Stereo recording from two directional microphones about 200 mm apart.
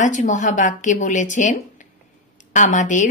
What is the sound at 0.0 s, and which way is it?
Speech, 35° left (ahead or behind).